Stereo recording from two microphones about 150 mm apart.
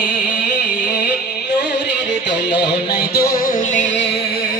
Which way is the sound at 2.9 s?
90° left.